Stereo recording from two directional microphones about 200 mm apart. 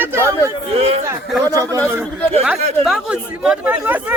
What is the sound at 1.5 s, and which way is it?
Speech, 15° right (ahead or behind).